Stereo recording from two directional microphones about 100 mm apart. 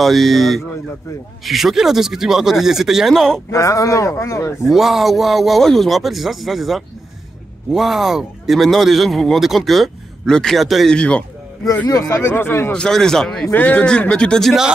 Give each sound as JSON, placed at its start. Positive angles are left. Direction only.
{"t": 0.0, "sound": "speech", "side_deg": 0}
{"t": 3.4, "sound": "speech", "side_deg": 30}
{"t": 4.6, "sound": "speech", "side_deg": 0}
{"t": 11.9, "sound": "speech", "side_deg": 35}
{"t": 12.7, "sound": "speech", "side_deg": 5}